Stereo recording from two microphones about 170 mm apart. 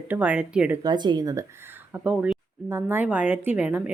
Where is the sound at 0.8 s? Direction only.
25° right (ahead or behind).